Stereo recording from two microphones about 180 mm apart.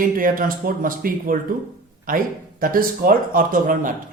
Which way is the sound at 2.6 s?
50° right (ahead or behind).